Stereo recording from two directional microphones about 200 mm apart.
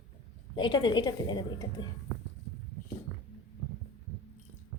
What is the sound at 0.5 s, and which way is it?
A woman's voice, 20° left (ahead or behind).